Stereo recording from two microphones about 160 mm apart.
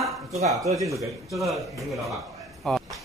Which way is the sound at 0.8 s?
20° right (ahead or behind).